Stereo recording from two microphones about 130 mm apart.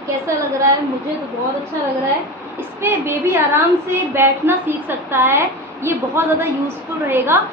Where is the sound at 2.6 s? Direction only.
20° right (ahead or behind).